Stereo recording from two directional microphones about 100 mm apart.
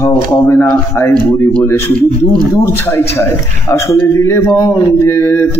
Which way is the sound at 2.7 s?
25° left (ahead or behind).